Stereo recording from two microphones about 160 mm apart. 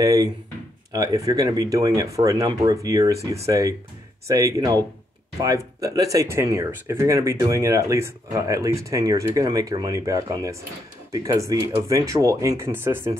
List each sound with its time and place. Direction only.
0.0 s speech: 20° right (ahead or behind)